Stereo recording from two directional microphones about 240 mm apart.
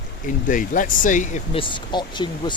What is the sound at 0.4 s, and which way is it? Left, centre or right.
Speech, left.